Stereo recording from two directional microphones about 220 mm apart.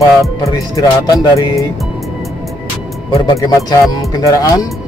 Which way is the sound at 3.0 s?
20° left (ahead or behind).